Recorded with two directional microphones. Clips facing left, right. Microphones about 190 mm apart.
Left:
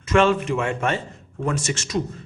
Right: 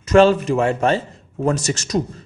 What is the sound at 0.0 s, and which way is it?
A man's voice, 35° right (ahead or behind).